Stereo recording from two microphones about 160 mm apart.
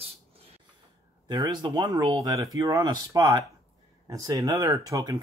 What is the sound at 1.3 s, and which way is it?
Speech, 25° right (ahead or behind).